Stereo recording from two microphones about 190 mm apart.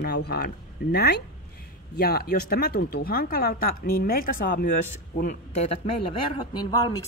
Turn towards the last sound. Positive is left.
turn(degrees=20)  # may be behind; listen again after turning